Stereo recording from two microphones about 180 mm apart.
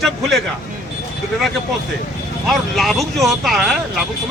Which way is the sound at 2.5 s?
Centre (ahead or behind).